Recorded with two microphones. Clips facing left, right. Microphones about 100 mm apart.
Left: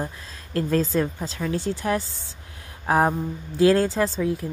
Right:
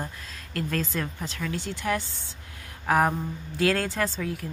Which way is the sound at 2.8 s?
25° left (ahead or behind).